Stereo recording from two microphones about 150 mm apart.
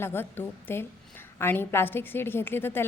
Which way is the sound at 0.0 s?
15° left (ahead or behind).